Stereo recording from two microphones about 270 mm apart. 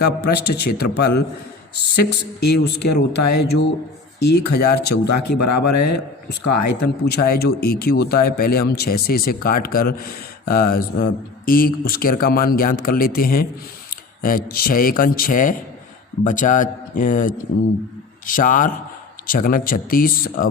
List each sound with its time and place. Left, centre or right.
0.0 s speech: left
2.9 s speech: left
3.3 s speech: left
5.3 s speech: left
7.0 s speech: left